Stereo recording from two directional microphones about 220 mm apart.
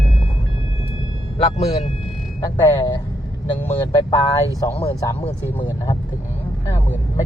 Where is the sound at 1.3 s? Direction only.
30° left (ahead or behind).